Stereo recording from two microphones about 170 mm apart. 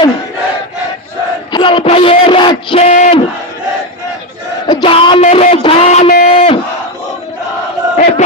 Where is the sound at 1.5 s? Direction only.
30° left (ahead or behind).